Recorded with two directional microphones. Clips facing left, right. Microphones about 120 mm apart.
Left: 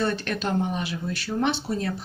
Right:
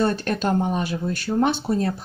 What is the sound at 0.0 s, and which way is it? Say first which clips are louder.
Speech: right 4 dB; 40° right (ahead or behind).